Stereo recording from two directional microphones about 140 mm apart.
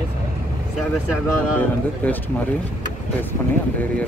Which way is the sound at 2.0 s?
15° left (ahead or behind).